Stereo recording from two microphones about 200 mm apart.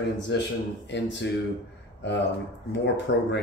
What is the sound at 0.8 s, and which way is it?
Speech, 60° left (ahead or behind).